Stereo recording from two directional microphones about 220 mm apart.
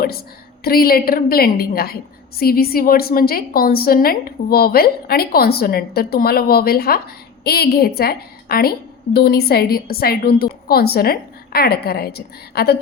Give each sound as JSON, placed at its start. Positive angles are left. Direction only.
{"t": 0.6, "sound": "a woman's voice", "side_deg": 45}